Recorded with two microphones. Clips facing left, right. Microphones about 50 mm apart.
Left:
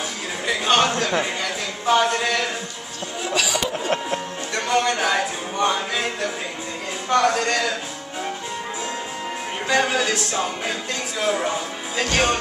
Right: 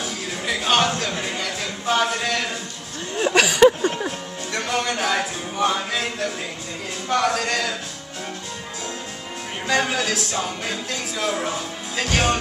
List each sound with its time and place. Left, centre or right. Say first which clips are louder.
0.5 s a sound: left 1 dB; centre
0.8 s a man's voice: left 3 dB; centre
3.2 s speech: right 8 dB; right
4.6 s music: left 3 dB; centre
9.7 s music: left 1 dB; centre